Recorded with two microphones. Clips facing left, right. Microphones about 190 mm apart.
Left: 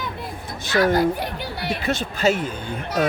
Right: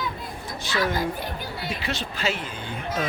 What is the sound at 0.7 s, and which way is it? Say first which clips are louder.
Speech: left 8 dB; 60° left (ahead or behind).